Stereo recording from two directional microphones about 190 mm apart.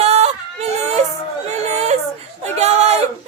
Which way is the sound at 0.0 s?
35° right (ahead or behind).